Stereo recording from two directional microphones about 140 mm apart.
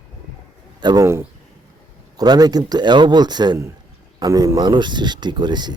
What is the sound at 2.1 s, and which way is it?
Speech, 30° right (ahead or behind).